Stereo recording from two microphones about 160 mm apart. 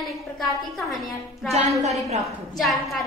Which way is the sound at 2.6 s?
Centre (ahead or behind).